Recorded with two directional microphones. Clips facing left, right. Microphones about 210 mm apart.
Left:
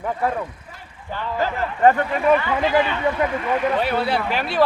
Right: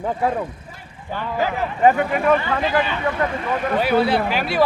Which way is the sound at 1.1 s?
15° right (ahead or behind).